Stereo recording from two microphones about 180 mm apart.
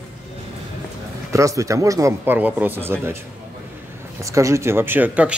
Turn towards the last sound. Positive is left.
turn(degrees=-10)  # may be behind; listen again after turning